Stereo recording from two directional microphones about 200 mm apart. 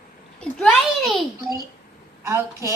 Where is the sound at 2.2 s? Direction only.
15° right (ahead or behind).